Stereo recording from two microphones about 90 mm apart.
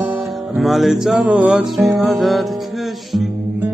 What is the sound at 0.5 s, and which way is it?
Music, centre (ahead or behind).